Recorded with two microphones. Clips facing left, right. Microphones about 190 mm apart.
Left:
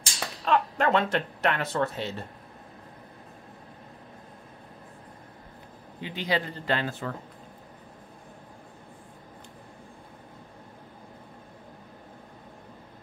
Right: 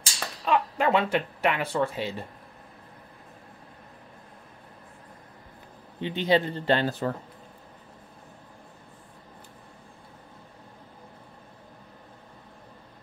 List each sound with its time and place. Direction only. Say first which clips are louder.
0.5 s speech: even; 10° right (ahead or behind)
5.9 s speech: right 6 dB; 25° right (ahead or behind)